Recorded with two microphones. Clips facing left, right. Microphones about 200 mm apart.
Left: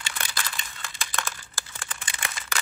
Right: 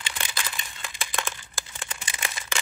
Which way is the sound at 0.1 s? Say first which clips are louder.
Even; 15° right (ahead or behind).